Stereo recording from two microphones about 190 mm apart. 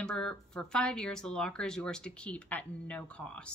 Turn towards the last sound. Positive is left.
turn(degrees=5)  # may be behind; listen again after turning